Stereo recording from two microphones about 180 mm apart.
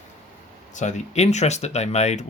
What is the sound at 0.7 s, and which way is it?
Speech, 40° left (ahead or behind).